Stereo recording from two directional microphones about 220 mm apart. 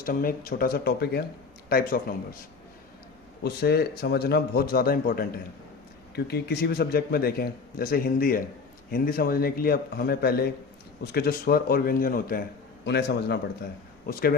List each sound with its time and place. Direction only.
0.0 s a man's voice: 40° left (ahead or behind)
3.4 s a man's voice: 45° left (ahead or behind)